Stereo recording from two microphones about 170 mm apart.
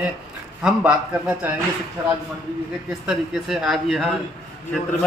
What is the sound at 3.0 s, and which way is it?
A man's voice, centre (ahead or behind).